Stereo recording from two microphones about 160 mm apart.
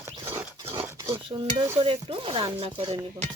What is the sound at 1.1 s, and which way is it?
Stir, 35° right (ahead or behind).